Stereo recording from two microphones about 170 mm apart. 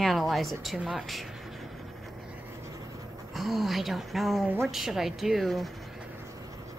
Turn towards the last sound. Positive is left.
turn(degrees=0)  # may be behind; listen again after turning